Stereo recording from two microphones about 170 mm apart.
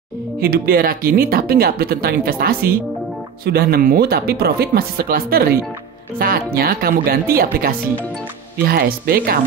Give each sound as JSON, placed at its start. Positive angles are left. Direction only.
{"t": 0.4, "sound": "speech", "side_deg": -65}